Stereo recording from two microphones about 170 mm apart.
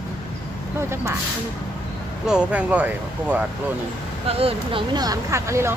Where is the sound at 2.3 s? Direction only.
5° right (ahead or behind).